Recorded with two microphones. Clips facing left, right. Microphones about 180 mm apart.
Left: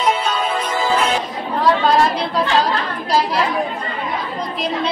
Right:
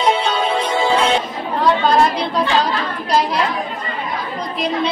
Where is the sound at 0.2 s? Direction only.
30° right (ahead or behind).